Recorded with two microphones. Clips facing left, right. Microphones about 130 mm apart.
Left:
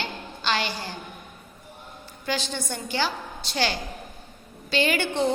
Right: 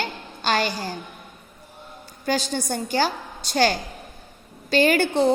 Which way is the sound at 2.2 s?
45° right (ahead or behind).